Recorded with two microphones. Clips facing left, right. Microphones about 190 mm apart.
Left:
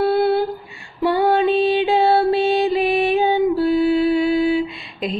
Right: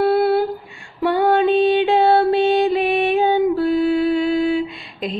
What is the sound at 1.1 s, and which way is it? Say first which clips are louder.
Music: right 1 dB; 5° left (ahead or behind).